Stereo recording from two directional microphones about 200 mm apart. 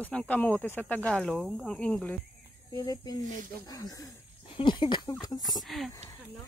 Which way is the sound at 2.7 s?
20° left (ahead or behind).